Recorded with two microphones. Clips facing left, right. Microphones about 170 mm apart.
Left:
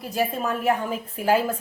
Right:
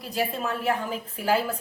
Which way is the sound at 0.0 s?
50° left (ahead or behind).